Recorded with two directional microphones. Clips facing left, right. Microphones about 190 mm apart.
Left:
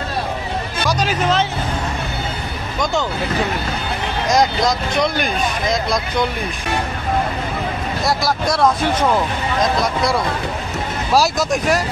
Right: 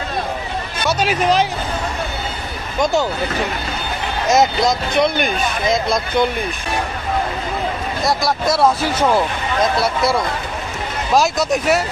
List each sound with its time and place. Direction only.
0.8 s speech: 10° right (ahead or behind)
2.8 s speech: 20° right (ahead or behind)
4.3 s speech: 5° right (ahead or behind)
8.0 s speech: centre (ahead or behind)
11.1 s speech: centre (ahead or behind)